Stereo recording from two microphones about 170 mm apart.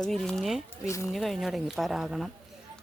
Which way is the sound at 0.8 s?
15° left (ahead or behind).